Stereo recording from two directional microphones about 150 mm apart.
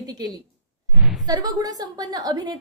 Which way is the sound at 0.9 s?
5° right (ahead or behind).